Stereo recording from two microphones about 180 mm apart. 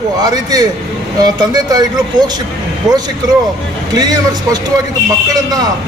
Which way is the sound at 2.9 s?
5° right (ahead or behind).